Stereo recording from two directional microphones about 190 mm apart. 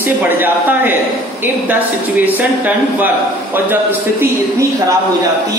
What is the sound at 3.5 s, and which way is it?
Speech, 10° right (ahead or behind).